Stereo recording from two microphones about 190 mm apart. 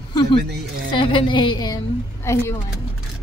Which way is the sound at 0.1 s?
25° left (ahead or behind).